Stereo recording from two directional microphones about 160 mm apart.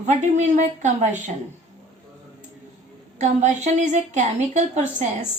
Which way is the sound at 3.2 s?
45° right (ahead or behind).